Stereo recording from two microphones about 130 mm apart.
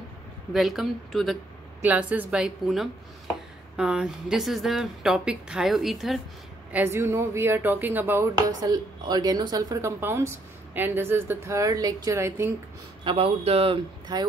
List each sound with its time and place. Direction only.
0.5 s speech: centre (ahead or behind)
1.8 s speech: 10° right (ahead or behind)
6.7 s speech: 20° right (ahead or behind)
8.5 s speech: 30° right (ahead or behind)
13.0 s a man's voice: 50° right (ahead or behind)
14.1 s speech: 30° right (ahead or behind)